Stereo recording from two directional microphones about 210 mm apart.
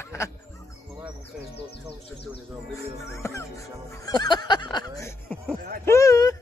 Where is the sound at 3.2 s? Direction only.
10° left (ahead or behind).